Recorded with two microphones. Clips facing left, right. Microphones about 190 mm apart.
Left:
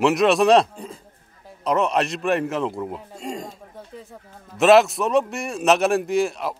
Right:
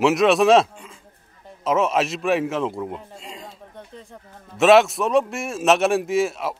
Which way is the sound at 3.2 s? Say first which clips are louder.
Left 7 dB; 45° left (ahead or behind).